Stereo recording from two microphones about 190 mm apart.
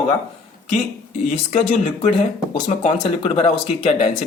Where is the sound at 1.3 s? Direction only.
40° left (ahead or behind).